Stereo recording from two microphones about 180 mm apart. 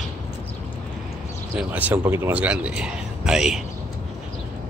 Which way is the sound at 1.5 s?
10° right (ahead or behind).